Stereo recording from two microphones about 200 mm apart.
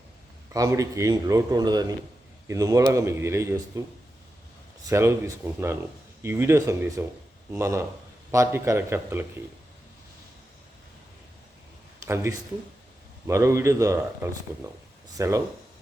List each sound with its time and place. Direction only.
0.5 s speech: 15° right (ahead or behind)
4.9 s speech: 15° right (ahead or behind)
12.0 s speech: 15° right (ahead or behind)